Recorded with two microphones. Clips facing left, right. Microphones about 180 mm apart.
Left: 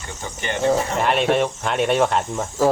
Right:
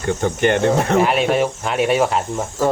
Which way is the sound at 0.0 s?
60° right (ahead or behind).